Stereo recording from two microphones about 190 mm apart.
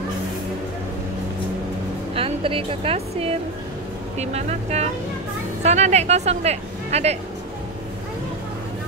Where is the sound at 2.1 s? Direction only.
30° right (ahead or behind).